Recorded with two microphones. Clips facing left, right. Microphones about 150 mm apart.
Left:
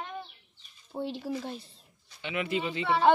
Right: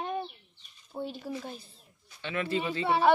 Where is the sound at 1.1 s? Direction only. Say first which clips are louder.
Left 3 dB; 30° left (ahead or behind).